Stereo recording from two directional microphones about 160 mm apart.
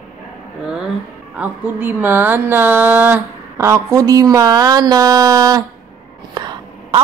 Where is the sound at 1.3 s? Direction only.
10° right (ahead or behind).